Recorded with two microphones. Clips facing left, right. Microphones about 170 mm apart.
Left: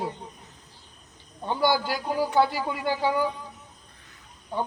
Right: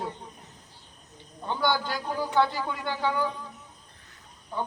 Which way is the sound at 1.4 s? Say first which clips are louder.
Left 3 dB; 10° left (ahead or behind).